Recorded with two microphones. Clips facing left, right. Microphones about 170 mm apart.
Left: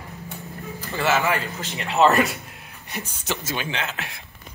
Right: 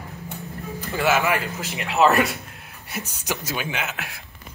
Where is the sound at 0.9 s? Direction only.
10° right (ahead or behind).